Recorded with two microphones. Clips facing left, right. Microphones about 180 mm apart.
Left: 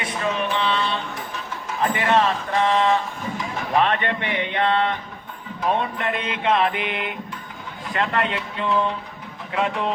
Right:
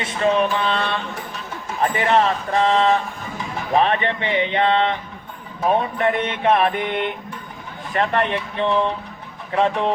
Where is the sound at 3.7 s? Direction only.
20° right (ahead or behind).